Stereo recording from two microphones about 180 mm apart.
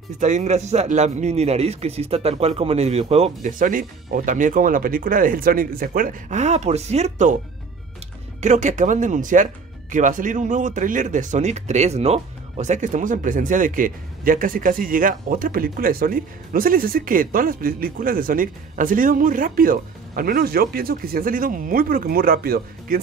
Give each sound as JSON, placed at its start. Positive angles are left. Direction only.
{"t": 0.2, "sound": "a man's voice", "side_deg": -40}
{"t": 8.4, "sound": "speech", "side_deg": -40}